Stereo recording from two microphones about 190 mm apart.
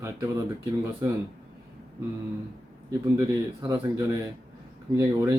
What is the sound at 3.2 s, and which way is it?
Speech, 15° right (ahead or behind).